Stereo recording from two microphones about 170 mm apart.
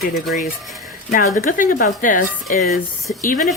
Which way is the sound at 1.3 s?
50° left (ahead or behind).